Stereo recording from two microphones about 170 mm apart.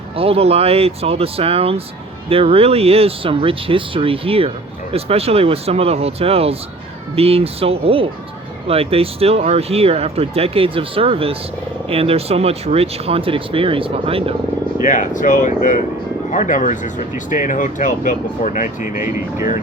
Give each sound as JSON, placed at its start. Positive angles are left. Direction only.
{"t": 0.2, "sound": "speech", "side_deg": -35}
{"t": 14.8, "sound": "speech", "side_deg": 50}
{"t": 18.9, "sound": "speech", "side_deg": -15}